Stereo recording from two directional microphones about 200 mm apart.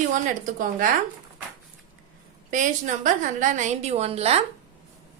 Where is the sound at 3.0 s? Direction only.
40° right (ahead or behind).